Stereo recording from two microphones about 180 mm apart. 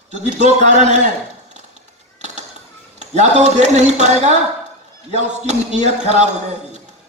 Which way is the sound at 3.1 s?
40° right (ahead or behind).